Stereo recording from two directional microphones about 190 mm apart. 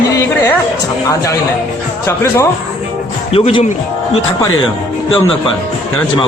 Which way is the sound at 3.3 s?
30° left (ahead or behind).